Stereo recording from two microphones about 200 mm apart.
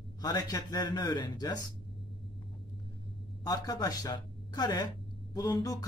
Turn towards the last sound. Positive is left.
turn(degrees=20)  # may be behind; listen again after turning